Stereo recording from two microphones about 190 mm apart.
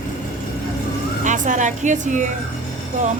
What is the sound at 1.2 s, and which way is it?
A woman's voice, 40° right (ahead or behind).